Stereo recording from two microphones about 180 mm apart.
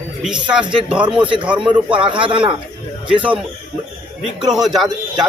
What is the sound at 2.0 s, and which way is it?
Speech, 30° right (ahead or behind).